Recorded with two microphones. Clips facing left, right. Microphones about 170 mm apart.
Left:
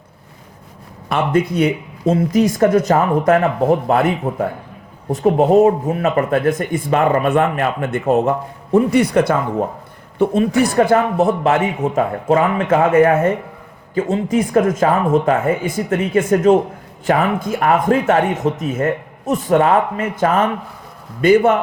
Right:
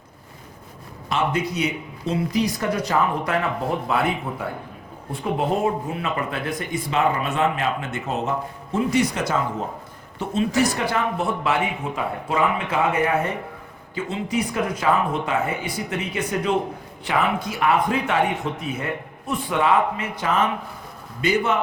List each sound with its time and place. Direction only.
1.1 s speech: 55° left (ahead or behind)